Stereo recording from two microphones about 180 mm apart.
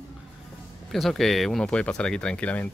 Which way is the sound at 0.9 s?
Centre (ahead or behind).